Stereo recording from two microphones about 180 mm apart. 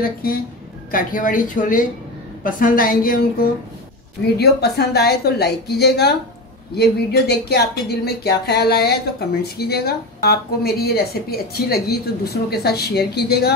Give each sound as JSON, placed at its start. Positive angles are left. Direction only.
{"t": 0.0, "sound": "a woman's voice", "side_deg": 55}